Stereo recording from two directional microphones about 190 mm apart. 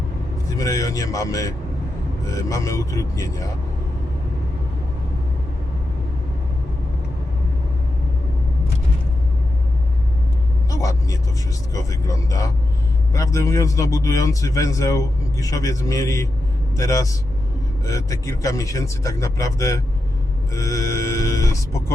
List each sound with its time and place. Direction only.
0.5 s a man's voice: 20° left (ahead or behind)
10.7 s vehicle: 20° left (ahead or behind)
11.7 s a man's voice: 15° left (ahead or behind)